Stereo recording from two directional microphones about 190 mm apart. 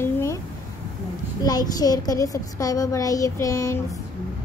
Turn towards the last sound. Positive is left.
turn(degrees=15)  # may be behind; listen again after turning